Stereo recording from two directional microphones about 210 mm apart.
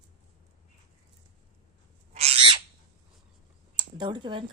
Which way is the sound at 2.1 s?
30° right (ahead or behind).